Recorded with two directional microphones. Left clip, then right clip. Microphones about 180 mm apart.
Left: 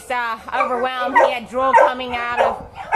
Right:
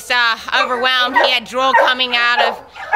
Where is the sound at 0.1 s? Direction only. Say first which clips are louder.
Right 7 dB; 20° right (ahead or behind).